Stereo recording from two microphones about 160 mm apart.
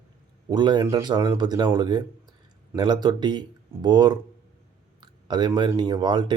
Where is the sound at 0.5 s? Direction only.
25° right (ahead or behind).